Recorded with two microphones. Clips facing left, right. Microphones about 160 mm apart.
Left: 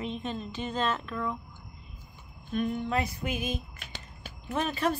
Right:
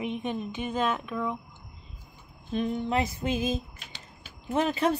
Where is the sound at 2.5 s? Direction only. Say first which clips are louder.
Right 2 dB; 30° right (ahead or behind).